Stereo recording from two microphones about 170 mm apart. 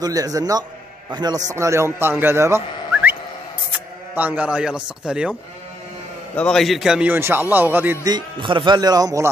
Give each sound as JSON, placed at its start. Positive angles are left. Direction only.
{"t": 0.0, "sound": "a man's voice", "side_deg": -20}
{"t": 6.3, "sound": "a man's voice", "side_deg": 5}
{"t": 8.0, "sound": "speech", "side_deg": -25}